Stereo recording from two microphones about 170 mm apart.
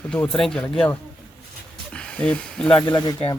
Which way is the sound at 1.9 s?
5° left (ahead or behind).